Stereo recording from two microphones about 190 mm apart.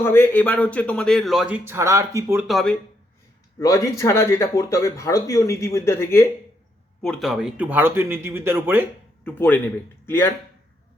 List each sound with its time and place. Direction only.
0.0 s a man's voice: 10° left (ahead or behind); by 2.5 s 15° right (ahead or behind)
2.5 s a man's voice: centre (ahead or behind)
3.6 s a man's voice: 15° left (ahead or behind)
7.0 s speech: centre (ahead or behind)
9.2 s a man's voice: 10° left (ahead or behind)